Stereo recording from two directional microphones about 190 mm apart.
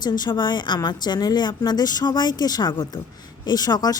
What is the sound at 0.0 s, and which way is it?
Speech, 20° left (ahead or behind).